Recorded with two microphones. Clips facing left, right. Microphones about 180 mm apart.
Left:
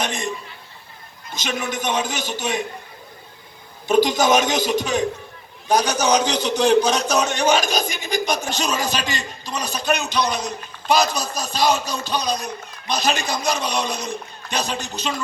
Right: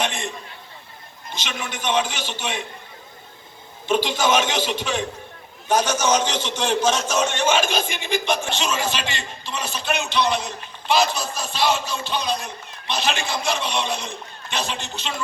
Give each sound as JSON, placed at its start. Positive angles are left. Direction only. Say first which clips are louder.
{"t": 0.0, "sound": "a man's voice", "louder": "even", "side_deg": 40}
{"t": 1.3, "sound": "a man's voice", "louder": "left 5 dB", "side_deg": 45}
{"t": 3.8, "sound": "a man's voice", "louder": "left 4 dB", "side_deg": 40}